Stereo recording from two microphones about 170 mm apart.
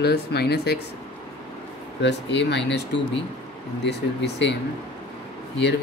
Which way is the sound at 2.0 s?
90° left.